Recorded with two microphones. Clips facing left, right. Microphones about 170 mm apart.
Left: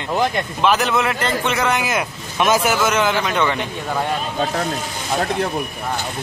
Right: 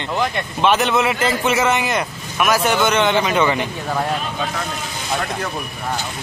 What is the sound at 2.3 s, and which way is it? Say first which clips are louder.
Speech: left 1 dB; 25° left (ahead or behind).